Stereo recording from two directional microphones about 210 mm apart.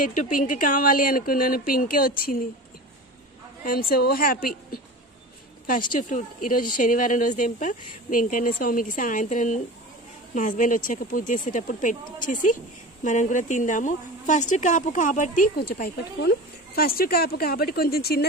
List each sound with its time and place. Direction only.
0.1 s a woman's voice: 40° left (ahead or behind)
3.6 s a woman's voice: 45° left (ahead or behind)